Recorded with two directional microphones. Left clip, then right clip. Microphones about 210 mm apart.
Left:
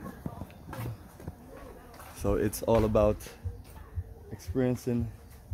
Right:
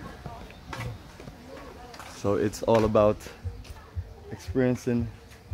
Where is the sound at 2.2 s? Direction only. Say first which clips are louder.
Right 3 dB; 10° left (ahead or behind).